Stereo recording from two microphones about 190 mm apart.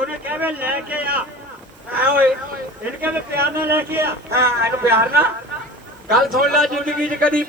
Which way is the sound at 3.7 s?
10° right (ahead or behind).